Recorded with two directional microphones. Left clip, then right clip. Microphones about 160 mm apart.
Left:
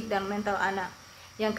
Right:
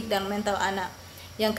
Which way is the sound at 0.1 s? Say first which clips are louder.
Right 2 dB; 15° right (ahead or behind).